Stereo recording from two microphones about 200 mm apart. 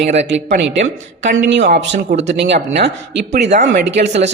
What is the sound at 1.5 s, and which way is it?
Speech, 60° right (ahead or behind).